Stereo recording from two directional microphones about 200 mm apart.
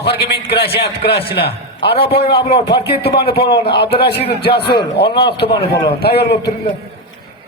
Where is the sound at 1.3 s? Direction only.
55° left (ahead or behind).